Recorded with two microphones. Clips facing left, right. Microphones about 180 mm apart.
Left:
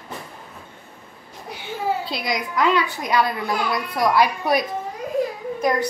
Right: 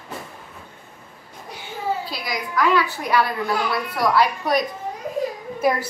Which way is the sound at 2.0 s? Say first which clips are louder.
Left 3 dB; 25° left (ahead or behind).